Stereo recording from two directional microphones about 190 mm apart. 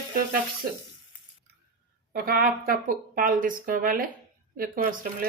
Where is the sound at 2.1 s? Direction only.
50° right (ahead or behind).